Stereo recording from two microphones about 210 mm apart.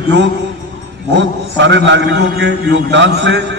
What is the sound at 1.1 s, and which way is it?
A man's voice, 60° right (ahead or behind).